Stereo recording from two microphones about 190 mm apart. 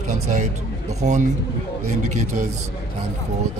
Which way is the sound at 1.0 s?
40° right (ahead or behind).